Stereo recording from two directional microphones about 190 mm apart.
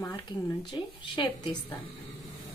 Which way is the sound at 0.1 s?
25° left (ahead or behind).